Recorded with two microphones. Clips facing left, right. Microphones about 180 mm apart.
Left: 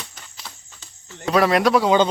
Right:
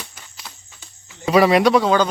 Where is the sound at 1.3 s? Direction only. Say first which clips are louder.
Right 3 dB; centre (ahead or behind).